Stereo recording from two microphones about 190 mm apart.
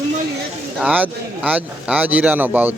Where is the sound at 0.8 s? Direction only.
10° right (ahead or behind).